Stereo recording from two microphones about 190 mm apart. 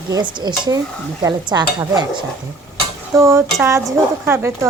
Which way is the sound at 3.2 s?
15° right (ahead or behind).